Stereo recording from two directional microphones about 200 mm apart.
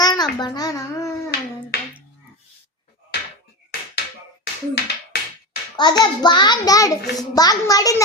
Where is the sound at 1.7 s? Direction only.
55° left (ahead or behind).